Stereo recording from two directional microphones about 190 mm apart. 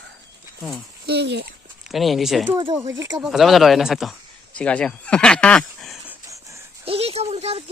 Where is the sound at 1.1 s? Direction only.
60° right (ahead or behind).